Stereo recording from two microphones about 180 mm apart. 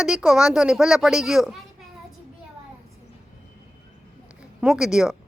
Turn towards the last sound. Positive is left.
turn(degrees=-5)  # may be behind; listen again after turning